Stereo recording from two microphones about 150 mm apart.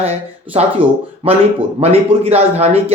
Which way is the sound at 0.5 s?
40° right (ahead or behind).